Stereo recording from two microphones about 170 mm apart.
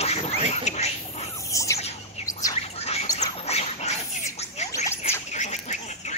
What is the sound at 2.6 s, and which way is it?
Bird, 40° left (ahead or behind).